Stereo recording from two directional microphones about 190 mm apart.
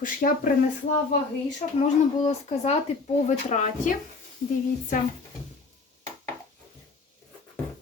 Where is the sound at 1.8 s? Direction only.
35° left (ahead or behind).